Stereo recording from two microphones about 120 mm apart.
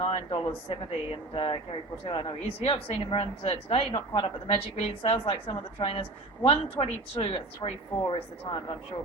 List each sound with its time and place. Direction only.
0.0 s a woman's voice: 45° left (ahead or behind)